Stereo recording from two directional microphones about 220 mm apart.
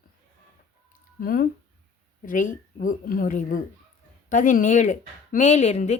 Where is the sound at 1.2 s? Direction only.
40° left (ahead or behind).